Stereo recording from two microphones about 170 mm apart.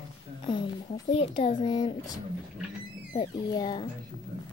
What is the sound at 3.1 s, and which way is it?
Speech, 25° left (ahead or behind).